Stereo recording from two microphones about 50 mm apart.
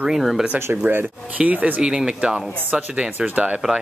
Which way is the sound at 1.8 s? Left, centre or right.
Centre.